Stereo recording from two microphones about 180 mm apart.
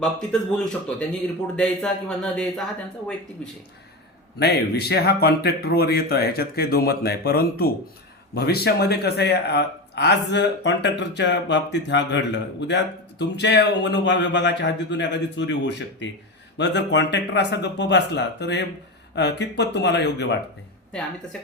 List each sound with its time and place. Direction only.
0.0 s speech: 5° left (ahead or behind)
4.4 s speech: 65° left (ahead or behind)